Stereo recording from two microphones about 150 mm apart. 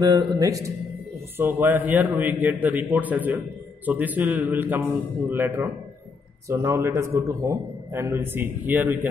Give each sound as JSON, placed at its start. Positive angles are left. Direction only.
{"t": 0.0, "sound": "a man's voice", "side_deg": -25}